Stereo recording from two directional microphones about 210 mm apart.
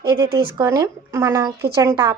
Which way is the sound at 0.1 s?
20° right (ahead or behind).